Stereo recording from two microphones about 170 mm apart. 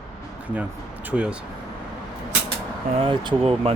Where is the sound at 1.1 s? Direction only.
5° right (ahead or behind).